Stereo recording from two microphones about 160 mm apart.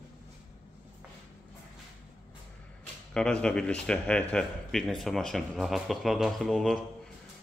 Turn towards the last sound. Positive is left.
turn(degrees=0)  # may be behind; listen again after turning